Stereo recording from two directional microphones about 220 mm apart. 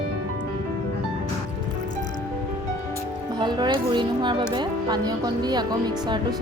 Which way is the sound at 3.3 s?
20° right (ahead or behind).